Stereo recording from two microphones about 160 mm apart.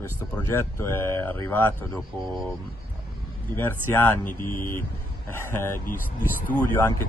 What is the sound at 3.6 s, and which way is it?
Speech, 15° left (ahead or behind).